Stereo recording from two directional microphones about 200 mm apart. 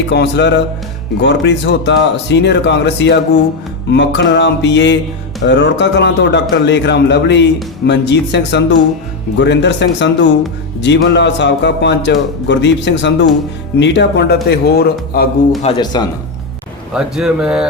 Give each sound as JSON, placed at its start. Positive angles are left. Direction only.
{"t": 0.1, "sound": "speech", "side_deg": 60}
{"t": 15.6, "sound": "speech", "side_deg": 25}
{"t": 16.9, "sound": "speech", "side_deg": -5}